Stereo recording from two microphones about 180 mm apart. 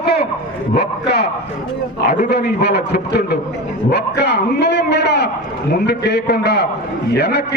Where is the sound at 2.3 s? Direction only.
65° left (ahead or behind).